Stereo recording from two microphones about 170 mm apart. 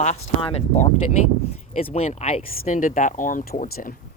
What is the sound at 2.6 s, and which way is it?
Speech, 50° left (ahead or behind).